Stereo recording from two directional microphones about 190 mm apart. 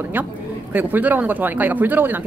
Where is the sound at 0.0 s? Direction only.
10° right (ahead or behind).